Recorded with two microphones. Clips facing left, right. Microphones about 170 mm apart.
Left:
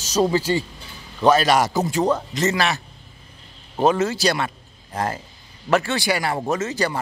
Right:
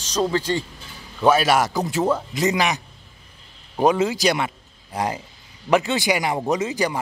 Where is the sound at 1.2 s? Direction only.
5° right (ahead or behind).